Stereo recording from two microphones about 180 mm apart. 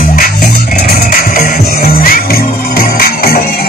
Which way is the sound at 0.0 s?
50° left (ahead or behind).